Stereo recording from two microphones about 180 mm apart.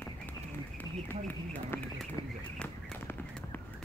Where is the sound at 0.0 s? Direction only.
10° left (ahead or behind).